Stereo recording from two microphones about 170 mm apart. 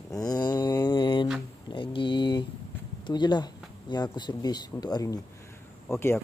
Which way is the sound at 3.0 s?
25° left (ahead or behind).